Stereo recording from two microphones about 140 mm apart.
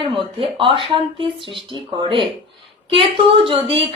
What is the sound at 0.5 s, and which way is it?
A woman's voice, 40° right (ahead or behind).